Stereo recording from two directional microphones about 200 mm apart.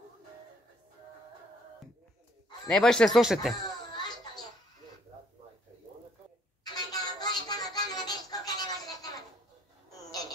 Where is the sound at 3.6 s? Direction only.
20° left (ahead or behind).